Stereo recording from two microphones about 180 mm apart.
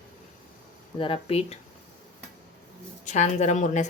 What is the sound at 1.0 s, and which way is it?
Speech, 30° left (ahead or behind).